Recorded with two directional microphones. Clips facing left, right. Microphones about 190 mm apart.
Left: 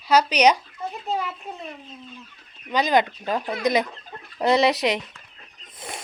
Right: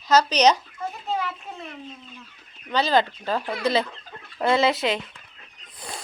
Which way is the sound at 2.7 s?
15° left (ahead or behind).